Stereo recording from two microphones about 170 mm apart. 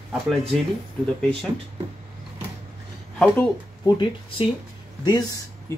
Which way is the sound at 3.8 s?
30° left (ahead or behind).